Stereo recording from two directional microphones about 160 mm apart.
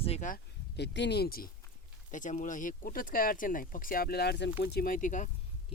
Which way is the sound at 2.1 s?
50° left (ahead or behind).